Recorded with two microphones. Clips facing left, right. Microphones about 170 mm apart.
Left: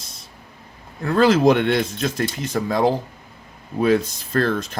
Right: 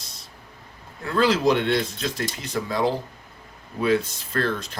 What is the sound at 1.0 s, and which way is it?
Speech, 45° left (ahead or behind).